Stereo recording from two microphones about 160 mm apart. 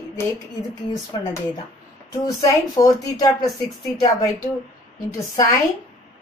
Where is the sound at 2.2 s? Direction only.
20° left (ahead or behind).